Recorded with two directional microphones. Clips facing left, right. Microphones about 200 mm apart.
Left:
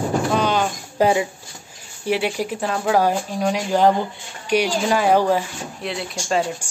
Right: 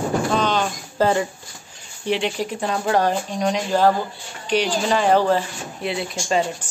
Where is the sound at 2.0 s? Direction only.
10° left (ahead or behind).